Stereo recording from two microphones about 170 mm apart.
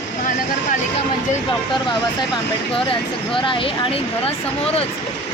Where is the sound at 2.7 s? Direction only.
30° left (ahead or behind).